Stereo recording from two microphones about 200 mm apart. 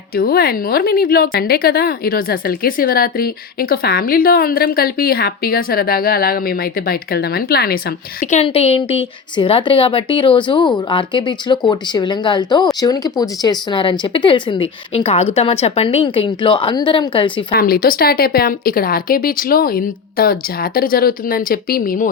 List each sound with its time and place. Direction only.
0.2 s a woman's voice: 50° left (ahead or behind)
8.2 s speech: 35° left (ahead or behind)
17.5 s a woman's voice: 45° left (ahead or behind)